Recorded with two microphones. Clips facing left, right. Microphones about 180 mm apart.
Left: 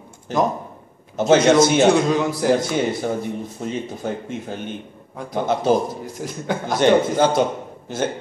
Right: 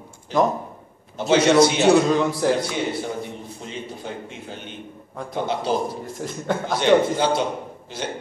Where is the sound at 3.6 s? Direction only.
45° left (ahead or behind).